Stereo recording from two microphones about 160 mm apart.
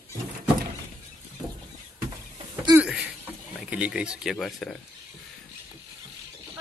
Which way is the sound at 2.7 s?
5° right (ahead or behind).